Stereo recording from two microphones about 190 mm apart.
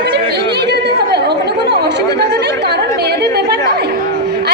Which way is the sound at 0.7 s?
60° right (ahead or behind).